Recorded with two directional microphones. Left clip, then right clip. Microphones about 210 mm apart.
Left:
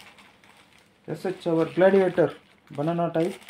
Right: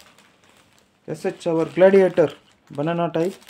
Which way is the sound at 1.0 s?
40° right (ahead or behind).